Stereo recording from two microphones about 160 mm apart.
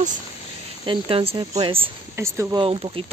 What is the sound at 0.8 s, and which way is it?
Speech, 35° right (ahead or behind).